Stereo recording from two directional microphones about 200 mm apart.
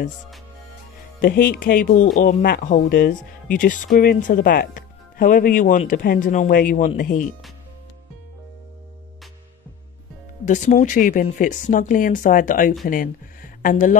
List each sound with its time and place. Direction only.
1.2 s speech: 45° left (ahead or behind)
10.4 s speech: 40° left (ahead or behind)